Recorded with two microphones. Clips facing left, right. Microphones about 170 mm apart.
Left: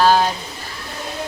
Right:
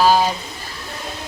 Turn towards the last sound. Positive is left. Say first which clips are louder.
# even
turn(degrees=-5)  # may be behind; listen again after turning